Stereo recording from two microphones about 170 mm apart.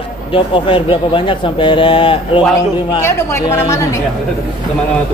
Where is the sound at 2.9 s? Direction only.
15° left (ahead or behind).